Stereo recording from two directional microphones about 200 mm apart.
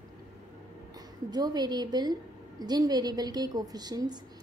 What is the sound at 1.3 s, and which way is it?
A woman's voice, 20° right (ahead or behind).